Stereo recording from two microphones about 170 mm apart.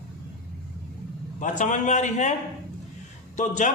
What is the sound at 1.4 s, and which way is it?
Speech, 50° left (ahead or behind).